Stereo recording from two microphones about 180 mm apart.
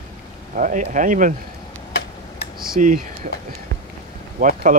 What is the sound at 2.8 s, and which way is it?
Speech, 45° right (ahead or behind).